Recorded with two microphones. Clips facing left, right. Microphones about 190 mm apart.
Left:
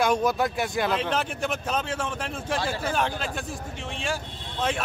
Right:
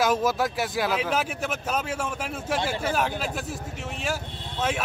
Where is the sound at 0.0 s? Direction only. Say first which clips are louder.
Even; 5° right (ahead or behind).